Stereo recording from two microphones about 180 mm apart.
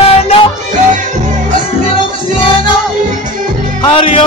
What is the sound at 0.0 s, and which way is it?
Music, 35° left (ahead or behind).